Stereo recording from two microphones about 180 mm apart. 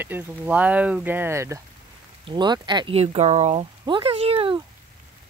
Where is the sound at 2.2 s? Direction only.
25° right (ahead or behind).